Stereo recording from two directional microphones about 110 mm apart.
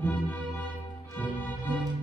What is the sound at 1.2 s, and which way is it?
Music, 15° left (ahead or behind).